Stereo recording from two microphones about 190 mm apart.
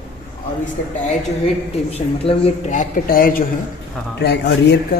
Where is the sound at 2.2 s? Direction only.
35° left (ahead or behind).